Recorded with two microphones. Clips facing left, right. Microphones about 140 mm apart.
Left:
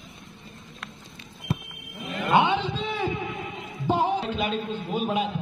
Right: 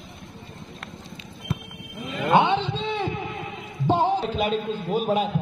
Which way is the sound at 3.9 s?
30° right (ahead or behind).